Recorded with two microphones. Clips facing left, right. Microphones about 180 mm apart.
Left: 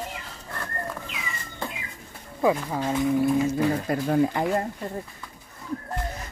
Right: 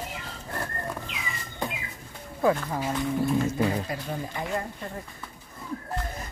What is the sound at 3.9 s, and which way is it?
Speech, 65° left (ahead or behind).